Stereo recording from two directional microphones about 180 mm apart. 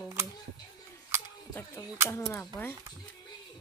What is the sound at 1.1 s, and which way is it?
Camera, 15° right (ahead or behind).